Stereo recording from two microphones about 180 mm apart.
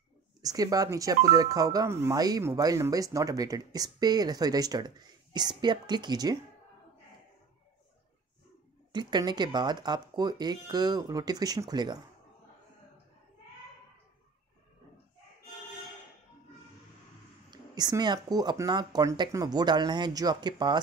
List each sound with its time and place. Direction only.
0.4 s speech: 20° right (ahead or behind)
8.9 s speech: 25° right (ahead or behind)
17.5 s speech: 20° right (ahead or behind)